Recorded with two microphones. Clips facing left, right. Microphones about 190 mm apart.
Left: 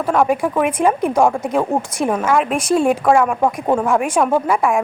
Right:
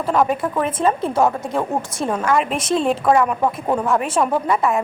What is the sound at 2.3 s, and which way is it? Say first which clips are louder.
A woman's voice: left 2 dB; centre (ahead or behind).